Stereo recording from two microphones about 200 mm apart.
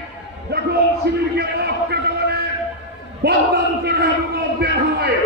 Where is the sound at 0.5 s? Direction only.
55° right (ahead or behind).